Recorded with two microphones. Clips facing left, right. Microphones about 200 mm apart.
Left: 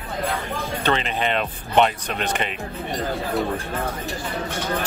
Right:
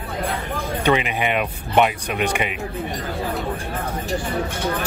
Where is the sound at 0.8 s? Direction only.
15° right (ahead or behind).